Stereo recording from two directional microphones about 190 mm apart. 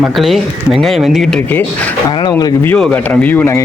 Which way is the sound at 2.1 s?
20° left (ahead or behind).